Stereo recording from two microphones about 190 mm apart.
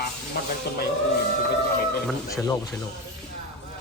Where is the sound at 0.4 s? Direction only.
55° left (ahead or behind).